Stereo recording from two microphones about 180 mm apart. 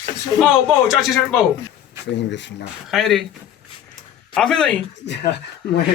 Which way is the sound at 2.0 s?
75° left (ahead or behind).